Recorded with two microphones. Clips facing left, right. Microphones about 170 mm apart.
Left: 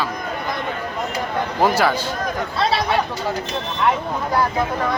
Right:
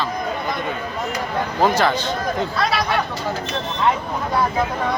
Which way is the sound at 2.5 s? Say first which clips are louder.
Left 1 dB; 25° left (ahead or behind).